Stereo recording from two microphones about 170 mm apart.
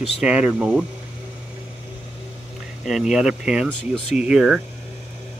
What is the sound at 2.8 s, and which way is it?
Speech, centre (ahead or behind).